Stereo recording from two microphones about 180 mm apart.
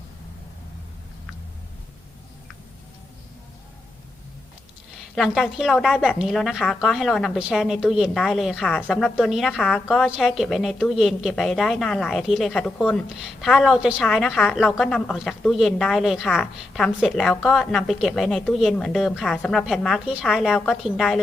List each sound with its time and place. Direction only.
5.1 s a woman's voice: centre (ahead or behind)